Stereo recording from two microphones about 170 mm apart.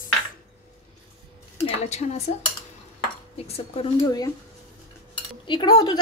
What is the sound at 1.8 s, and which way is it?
Speech, 40° left (ahead or behind).